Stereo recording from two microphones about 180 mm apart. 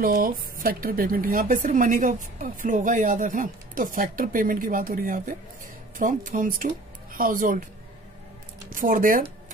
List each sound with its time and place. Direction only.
0.0 s speech: 50° right (ahead or behind)
8.6 s speech: 50° right (ahead or behind)